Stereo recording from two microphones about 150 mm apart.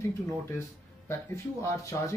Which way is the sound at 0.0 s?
20° left (ahead or behind).